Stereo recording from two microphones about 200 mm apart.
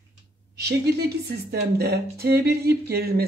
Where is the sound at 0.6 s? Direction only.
55° right (ahead or behind).